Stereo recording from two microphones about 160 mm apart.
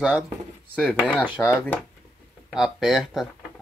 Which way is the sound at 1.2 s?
20° left (ahead or behind).